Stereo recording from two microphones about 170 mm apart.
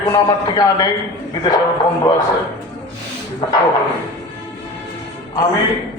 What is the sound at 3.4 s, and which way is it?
Speech, 30° left (ahead or behind).